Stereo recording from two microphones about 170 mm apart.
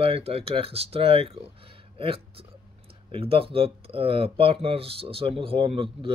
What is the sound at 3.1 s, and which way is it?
Speech, 35° right (ahead or behind).